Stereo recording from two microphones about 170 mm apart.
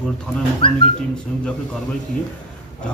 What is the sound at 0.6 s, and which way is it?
Speech, 30° left (ahead or behind).